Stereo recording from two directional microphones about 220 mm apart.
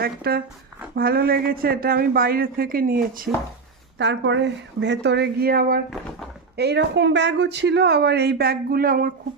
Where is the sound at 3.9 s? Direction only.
50° right (ahead or behind).